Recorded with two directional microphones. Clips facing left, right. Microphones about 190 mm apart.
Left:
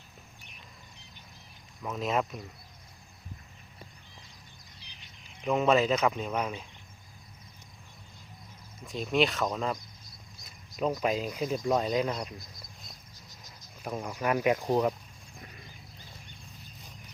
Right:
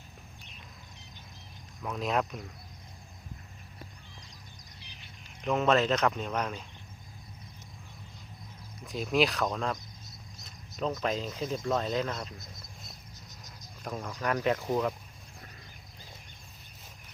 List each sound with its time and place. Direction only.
1.8 s speech: centre (ahead or behind)
5.4 s speech: 5° left (ahead or behind)
8.8 s speech: centre (ahead or behind)
9.7 s cricket: 20° right (ahead or behind)
10.8 s speech: 5° left (ahead or behind)
13.4 s speech: 10° left (ahead or behind)